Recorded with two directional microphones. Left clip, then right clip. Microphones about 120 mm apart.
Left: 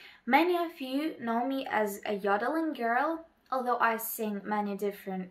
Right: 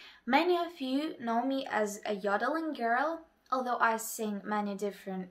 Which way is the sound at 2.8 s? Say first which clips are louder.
Even; 10° right (ahead or behind).